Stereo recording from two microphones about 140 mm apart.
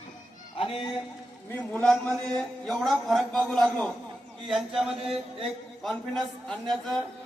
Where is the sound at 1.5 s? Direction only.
10° left (ahead or behind).